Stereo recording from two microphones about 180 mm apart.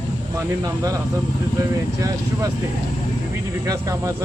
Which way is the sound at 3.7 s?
15° right (ahead or behind).